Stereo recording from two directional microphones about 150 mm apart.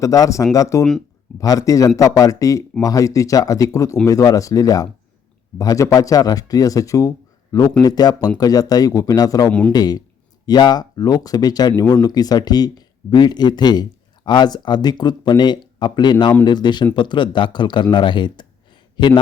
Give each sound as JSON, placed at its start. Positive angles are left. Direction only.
{"t": 0.0, "sound": "speech", "side_deg": 20}
{"t": 9.5, "sound": "speech", "side_deg": 10}
{"t": 9.7, "sound": "speech", "side_deg": 25}